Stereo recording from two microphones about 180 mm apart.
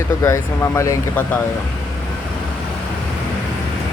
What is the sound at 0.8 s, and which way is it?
Speech, 15° left (ahead or behind).